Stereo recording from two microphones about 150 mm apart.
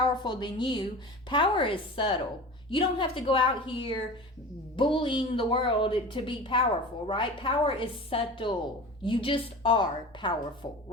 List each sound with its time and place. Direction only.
0.0 s a woman's voice: 30° left (ahead or behind)